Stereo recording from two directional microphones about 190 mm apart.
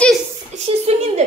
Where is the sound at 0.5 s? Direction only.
35° right (ahead or behind).